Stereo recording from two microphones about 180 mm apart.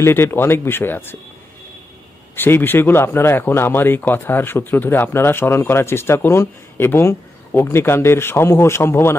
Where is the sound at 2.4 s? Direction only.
10° left (ahead or behind).